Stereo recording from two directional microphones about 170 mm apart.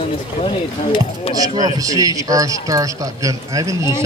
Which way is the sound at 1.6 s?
20° right (ahead or behind).